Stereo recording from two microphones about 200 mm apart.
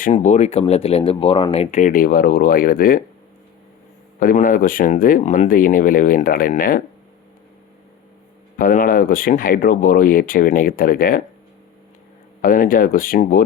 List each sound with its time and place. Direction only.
0.1 s speech: 35° left (ahead or behind)
4.2 s speech: 45° left (ahead or behind)
8.5 s speech: 45° left (ahead or behind)
12.4 s speech: 45° left (ahead or behind)